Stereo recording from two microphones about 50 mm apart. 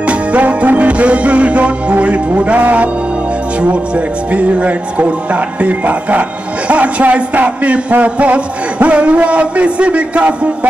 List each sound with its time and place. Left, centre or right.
0.0 s music: right